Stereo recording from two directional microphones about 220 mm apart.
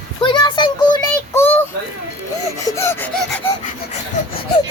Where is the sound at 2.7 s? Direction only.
10° left (ahead or behind).